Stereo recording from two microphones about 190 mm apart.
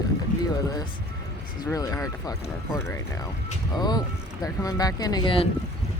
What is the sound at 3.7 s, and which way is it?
Speech, 20° left (ahead or behind).